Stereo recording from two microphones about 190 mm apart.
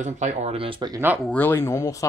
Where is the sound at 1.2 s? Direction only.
10° left (ahead or behind).